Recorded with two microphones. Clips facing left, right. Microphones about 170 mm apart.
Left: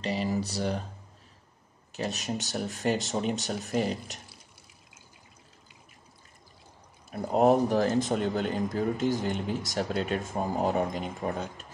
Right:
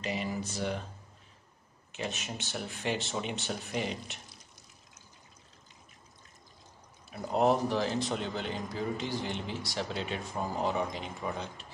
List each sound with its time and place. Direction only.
0.0 s speech: 35° left (ahead or behind)
1.9 s speech: 40° left (ahead or behind)
7.1 s speech: 45° left (ahead or behind)